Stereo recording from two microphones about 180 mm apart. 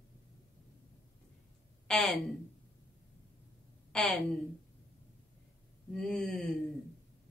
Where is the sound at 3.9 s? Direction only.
5° left (ahead or behind).